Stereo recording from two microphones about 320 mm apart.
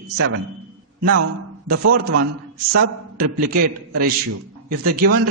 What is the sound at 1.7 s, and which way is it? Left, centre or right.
Speech, right.